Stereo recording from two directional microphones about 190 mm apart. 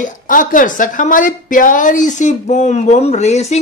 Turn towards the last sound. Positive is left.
turn(degrees=35)  # may be behind; listen again after turning